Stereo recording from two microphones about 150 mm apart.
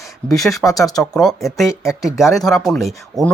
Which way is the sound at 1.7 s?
20° left (ahead or behind).